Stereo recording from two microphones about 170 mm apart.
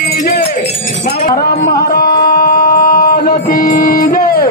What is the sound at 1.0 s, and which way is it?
Speech, 55° left (ahead or behind).